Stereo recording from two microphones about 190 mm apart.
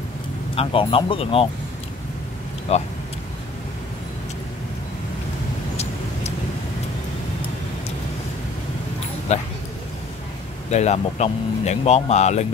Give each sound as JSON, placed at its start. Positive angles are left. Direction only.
{"t": 0.6, "sound": "speech", "side_deg": 30}
{"t": 2.7, "sound": "speech", "side_deg": 35}
{"t": 9.3, "sound": "speech", "side_deg": 35}
{"t": 10.7, "sound": "speech", "side_deg": 35}